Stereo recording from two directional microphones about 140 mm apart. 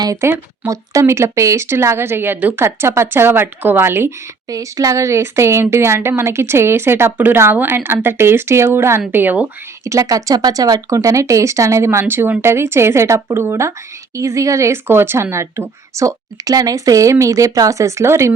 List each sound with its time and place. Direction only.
0.0 s speech: 20° right (ahead or behind)
9.8 s speech: 25° right (ahead or behind)